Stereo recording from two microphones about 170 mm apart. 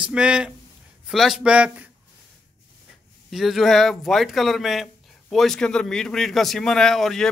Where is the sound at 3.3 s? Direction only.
Centre (ahead or behind).